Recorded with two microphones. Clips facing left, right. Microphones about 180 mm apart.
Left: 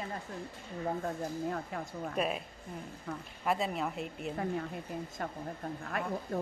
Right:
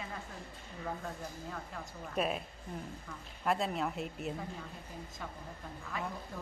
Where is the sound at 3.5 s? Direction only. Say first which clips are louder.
Left 1 dB; centre (ahead or behind).